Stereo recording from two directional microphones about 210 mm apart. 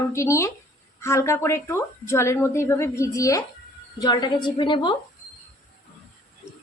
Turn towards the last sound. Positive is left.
turn(degrees=20)  # may be behind; listen again after turning